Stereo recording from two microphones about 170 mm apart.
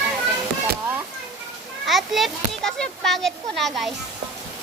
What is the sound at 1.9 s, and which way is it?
A child's voice, centre (ahead or behind).